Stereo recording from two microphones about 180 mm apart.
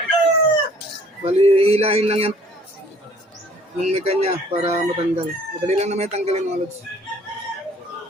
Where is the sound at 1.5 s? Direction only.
35° right (ahead or behind).